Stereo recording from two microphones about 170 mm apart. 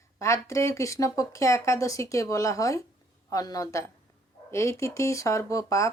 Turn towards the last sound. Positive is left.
turn(degrees=20)  # may be behind; listen again after turning